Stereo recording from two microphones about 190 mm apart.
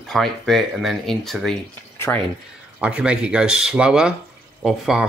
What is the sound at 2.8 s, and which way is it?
Speech, 5° right (ahead or behind).